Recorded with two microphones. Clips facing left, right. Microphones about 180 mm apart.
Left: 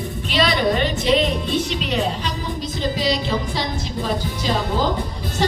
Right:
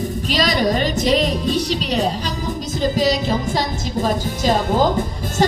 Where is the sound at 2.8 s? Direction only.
45° right (ahead or behind).